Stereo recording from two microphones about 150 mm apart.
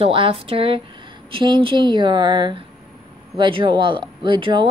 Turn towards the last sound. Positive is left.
turn(degrees=-30)  # may be behind; listen again after turning